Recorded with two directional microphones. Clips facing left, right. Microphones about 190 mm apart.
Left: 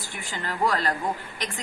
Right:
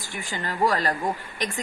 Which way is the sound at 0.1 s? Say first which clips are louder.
Right 2 dB; 15° right (ahead or behind).